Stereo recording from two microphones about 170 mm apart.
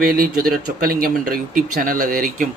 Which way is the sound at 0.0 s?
60° right (ahead or behind).